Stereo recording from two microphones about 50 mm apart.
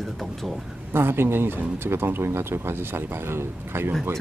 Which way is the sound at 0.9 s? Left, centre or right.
Right.